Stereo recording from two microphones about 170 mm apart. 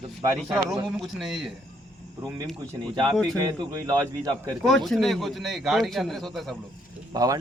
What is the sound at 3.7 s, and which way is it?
Speech, 20° right (ahead or behind).